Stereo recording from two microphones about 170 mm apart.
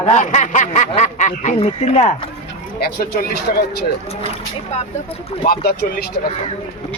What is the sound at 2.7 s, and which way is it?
Speech, 65° left (ahead or behind).